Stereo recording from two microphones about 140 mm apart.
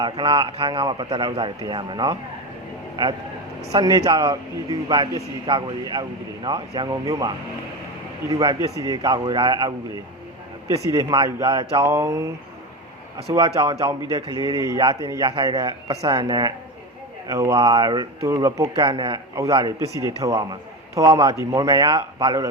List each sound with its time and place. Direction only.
0.0 s a man's voice: 35° right (ahead or behind)
10.9 s a man's voice: 30° right (ahead or behind)
11.7 s a man's voice: 20° right (ahead or behind)
13.3 s a man's voice: 30° right (ahead or behind)
18.8 s a man's voice: 35° right (ahead or behind)